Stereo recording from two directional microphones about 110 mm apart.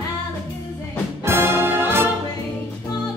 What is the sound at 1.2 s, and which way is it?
Music, 20° right (ahead or behind).